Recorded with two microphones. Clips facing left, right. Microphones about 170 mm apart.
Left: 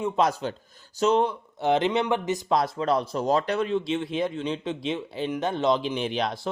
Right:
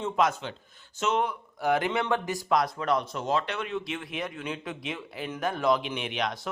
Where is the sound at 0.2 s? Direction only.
35° left (ahead or behind).